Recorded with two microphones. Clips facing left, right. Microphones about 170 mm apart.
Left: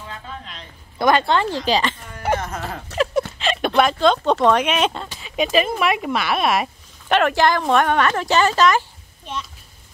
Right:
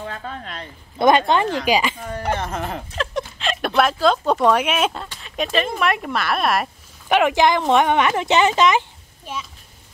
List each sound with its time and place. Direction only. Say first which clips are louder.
0.0 s a sound: right 4 dB; 55° right (ahead or behind)
0.9 s speech: right 2 dB; 20° right (ahead or behind)
2.4 s speech: right 2 dB; 25° right (ahead or behind)
3.0 s speech: left 7 dB; 5° left (ahead or behind)
7.1 s speech: right 1 dB; 15° right (ahead or behind)
9.2 s speech: left 1 dB; 5° right (ahead or behind)